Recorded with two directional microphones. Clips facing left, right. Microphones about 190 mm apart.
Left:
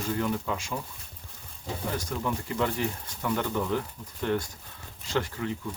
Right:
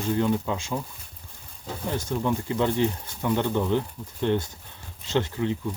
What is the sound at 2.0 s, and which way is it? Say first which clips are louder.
Speech: right 5 dB; 25° right (ahead or behind).